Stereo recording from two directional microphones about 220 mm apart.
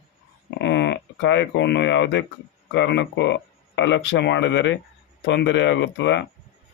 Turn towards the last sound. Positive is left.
turn(degrees=55)  # may be behind; listen again after turning